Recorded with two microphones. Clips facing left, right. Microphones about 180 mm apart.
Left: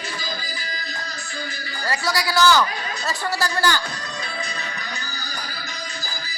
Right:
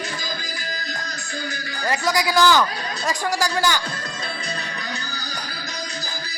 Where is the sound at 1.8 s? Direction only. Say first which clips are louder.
Right 3 dB; 20° right (ahead or behind).